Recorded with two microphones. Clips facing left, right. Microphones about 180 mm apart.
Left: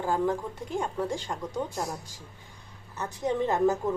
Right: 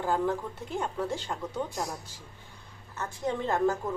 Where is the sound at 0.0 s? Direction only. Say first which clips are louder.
Left 1 dB; 10° left (ahead or behind).